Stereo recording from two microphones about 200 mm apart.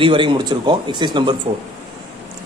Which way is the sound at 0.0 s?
25° right (ahead or behind).